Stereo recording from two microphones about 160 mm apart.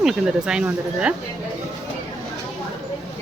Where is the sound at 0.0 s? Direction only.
5° right (ahead or behind).